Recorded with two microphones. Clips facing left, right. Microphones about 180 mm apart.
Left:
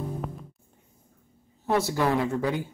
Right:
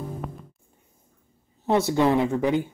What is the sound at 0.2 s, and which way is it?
Music, centre (ahead or behind).